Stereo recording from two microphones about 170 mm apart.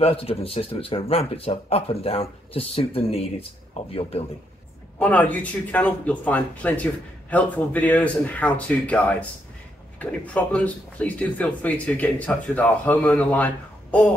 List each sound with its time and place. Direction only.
0.0 s speech: 35° left (ahead or behind)
4.9 s a man's voice: 10° left (ahead or behind)